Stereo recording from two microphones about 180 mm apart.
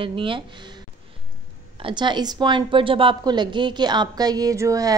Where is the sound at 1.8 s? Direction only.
25° right (ahead or behind).